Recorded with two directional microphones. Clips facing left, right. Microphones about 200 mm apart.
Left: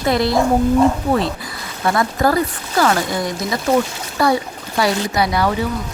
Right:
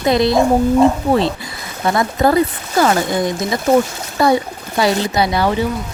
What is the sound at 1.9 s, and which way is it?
Speech, 20° right (ahead or behind).